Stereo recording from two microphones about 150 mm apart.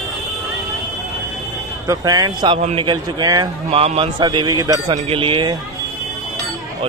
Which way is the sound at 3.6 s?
45° right (ahead or behind).